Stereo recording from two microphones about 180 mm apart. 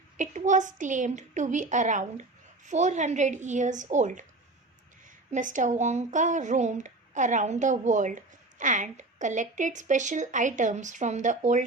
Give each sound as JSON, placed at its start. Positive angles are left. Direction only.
{"t": 0.2, "sound": "speech", "side_deg": -45}
{"t": 5.3, "sound": "speech", "side_deg": -45}